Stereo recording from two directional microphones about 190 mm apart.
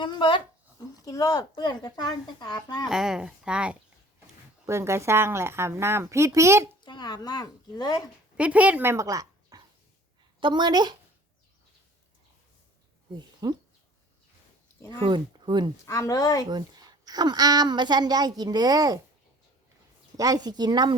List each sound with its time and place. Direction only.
0.0 s speech: 25° left (ahead or behind)
2.9 s a woman's voice: 5° right (ahead or behind)
6.8 s speech: 20° left (ahead or behind)
8.4 s a woman's voice: 10° right (ahead or behind)
13.1 s speech: 25° right (ahead or behind)
14.9 s a woman's voice: 25° right (ahead or behind)
15.9 s speech: 15° left (ahead or behind)
16.5 s a woman's voice: 20° right (ahead or behind)
20.1 s a woman's voice: 20° right (ahead or behind)